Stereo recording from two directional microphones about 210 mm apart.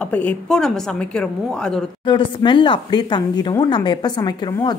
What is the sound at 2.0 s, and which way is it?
Speech, 20° left (ahead or behind).